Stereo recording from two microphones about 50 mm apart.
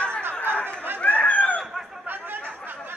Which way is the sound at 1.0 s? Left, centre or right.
Left.